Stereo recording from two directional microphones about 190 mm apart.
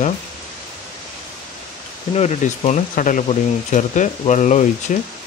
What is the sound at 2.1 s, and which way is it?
Speech, 35° left (ahead or behind).